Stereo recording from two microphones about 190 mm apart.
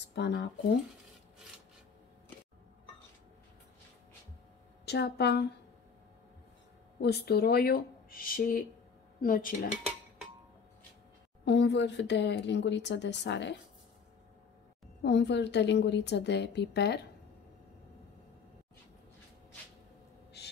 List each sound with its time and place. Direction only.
0.0 s speech: 65° left (ahead or behind)
4.8 s a woman's voice: 60° left (ahead or behind)
7.0 s speech: 60° left (ahead or behind)
11.4 s speech: 65° left (ahead or behind)
15.0 s a woman's voice: 65° left (ahead or behind)
20.4 s a sound: 60° left (ahead or behind)